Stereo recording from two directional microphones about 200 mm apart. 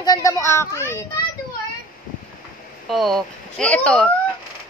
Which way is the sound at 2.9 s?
Centre (ahead or behind).